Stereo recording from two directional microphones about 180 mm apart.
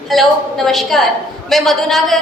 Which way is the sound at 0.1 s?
Centre (ahead or behind).